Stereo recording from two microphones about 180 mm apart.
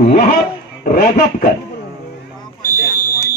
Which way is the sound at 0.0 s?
55° left (ahead or behind).